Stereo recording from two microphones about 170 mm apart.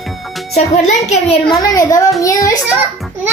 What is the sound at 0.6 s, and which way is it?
Speech, 40° left (ahead or behind).